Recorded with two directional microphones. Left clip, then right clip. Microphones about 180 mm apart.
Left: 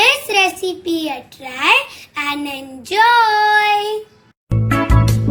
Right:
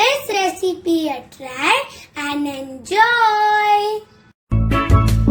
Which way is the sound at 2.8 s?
30° right (ahead or behind).